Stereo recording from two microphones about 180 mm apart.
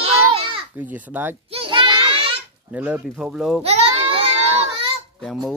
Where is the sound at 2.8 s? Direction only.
10° right (ahead or behind).